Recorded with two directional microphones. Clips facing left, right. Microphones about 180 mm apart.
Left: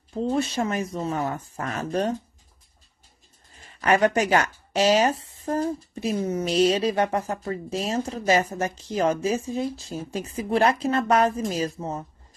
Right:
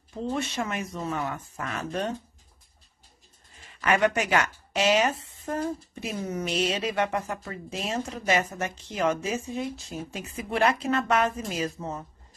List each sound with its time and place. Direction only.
0.2 s speech: 35° left (ahead or behind)
3.8 s speech: 35° left (ahead or behind)